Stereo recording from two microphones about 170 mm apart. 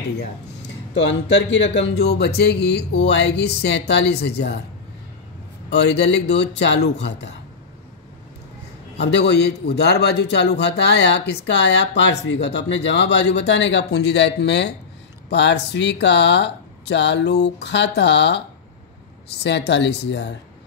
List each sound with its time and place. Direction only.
0.9 s speech: 90° left
5.7 s a man's voice: 90° left
8.9 s a man's voice: 90° left